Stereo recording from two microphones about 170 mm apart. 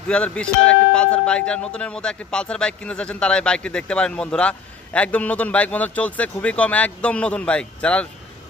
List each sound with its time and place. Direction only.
0.1 s speech: 5° left (ahead or behind)